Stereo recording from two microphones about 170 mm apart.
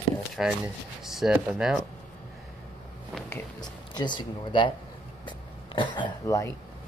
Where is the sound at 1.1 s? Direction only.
Centre (ahead or behind).